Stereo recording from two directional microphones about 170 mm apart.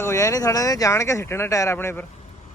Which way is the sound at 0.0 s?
15° left (ahead or behind).